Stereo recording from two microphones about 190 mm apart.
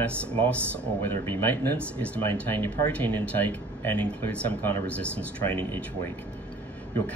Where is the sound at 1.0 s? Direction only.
10° left (ahead or behind).